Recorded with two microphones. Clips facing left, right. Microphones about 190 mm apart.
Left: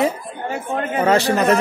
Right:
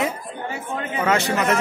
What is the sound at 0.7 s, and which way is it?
Speech, 50° left (ahead or behind).